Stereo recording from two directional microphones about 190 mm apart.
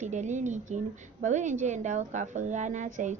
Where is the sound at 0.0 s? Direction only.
40° right (ahead or behind).